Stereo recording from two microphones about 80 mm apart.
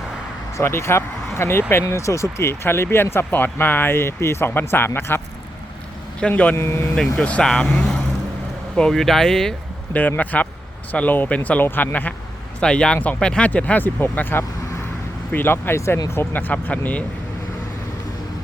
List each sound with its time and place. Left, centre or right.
0.5 s speech: left
6.1 s speech: centre
6.6 s speech: left
6.9 s speech: centre
9.9 s speech: left
12.5 s speech: centre; by 16.0 s left
16.1 s speech: left